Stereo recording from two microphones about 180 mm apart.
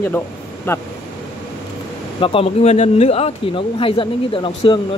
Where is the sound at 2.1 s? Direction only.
30° left (ahead or behind).